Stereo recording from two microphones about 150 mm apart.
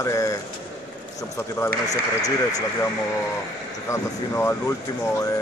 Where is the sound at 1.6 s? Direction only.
25° left (ahead or behind).